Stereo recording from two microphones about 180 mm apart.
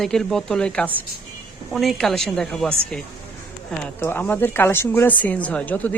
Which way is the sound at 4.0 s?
10° left (ahead or behind).